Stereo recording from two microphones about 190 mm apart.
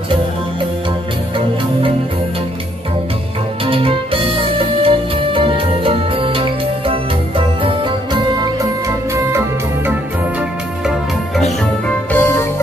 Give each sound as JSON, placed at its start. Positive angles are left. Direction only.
{"t": 3.6, "sound": "music", "side_deg": -30}
{"t": 12.1, "sound": "music", "side_deg": 10}